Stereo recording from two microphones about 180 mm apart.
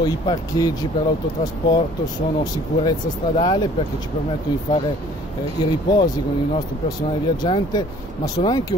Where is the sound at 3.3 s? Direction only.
25° left (ahead or behind).